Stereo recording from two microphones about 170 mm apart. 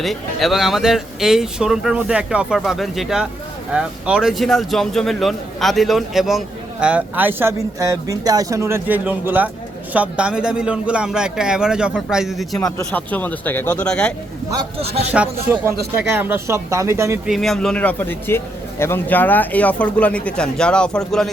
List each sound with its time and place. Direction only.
0.0 s a man's voice: centre (ahead or behind)
12.6 s a man's voice: 15° left (ahead or behind)
15.1 s speech: 5° right (ahead or behind)
17.2 s a man's voice: centre (ahead or behind)